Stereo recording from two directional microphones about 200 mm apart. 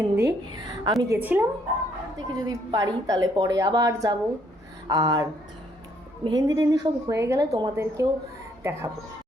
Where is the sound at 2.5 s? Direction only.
15° right (ahead or behind).